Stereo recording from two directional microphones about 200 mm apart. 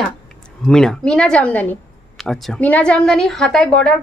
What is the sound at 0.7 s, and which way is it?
A woman's voice, 5° left (ahead or behind).